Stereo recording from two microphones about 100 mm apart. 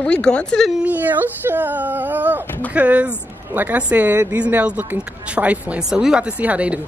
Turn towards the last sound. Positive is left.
turn(degrees=-15)  # may be behind; listen again after turning